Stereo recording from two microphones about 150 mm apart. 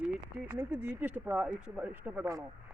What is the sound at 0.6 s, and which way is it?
Speech, 10° right (ahead or behind).